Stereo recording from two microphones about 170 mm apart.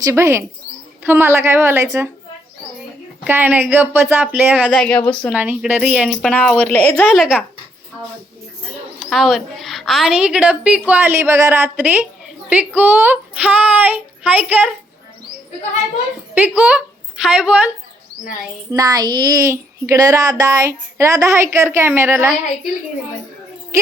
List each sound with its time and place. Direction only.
0.0 s speech: 15° right (ahead or behind)
3.2 s a woman's voice: 10° right (ahead or behind); by 5.3 s 10° left (ahead or behind)
5.3 s speech: 10° right (ahead or behind)
6.2 s a woman's voice: 5° left (ahead or behind)
7.1 s a woman's voice: 5° right (ahead or behind)
9.0 s a woman's voice: centre (ahead or behind)
16.3 s a woman's voice: 10° right (ahead or behind)
18.7 s speech: 20° right (ahead or behind)